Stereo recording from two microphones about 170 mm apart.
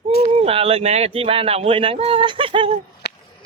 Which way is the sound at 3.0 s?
80° left.